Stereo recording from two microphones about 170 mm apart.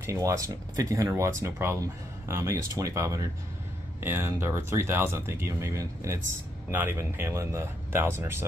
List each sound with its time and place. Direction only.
0.0 s speech: 20° right (ahead or behind)